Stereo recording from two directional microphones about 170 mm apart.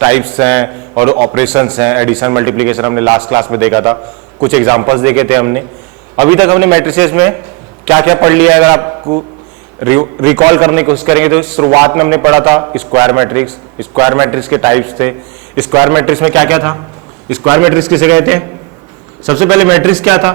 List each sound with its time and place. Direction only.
0.0 s speech: 15° right (ahead or behind)
10.2 s speech: 15° right (ahead or behind)